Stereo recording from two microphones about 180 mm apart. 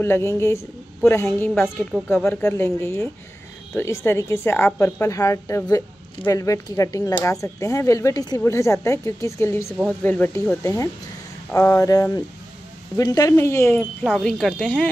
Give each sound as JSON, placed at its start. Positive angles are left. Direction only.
{"t": 0.0, "sound": "a woman's voice", "side_deg": 15}
{"t": 14.0, "sound": "speech", "side_deg": 0}